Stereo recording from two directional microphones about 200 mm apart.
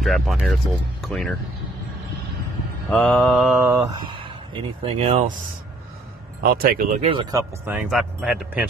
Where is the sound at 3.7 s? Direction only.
20° right (ahead or behind).